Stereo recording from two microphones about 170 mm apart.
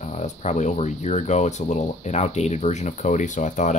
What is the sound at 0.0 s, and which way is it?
Speech, 45° left (ahead or behind).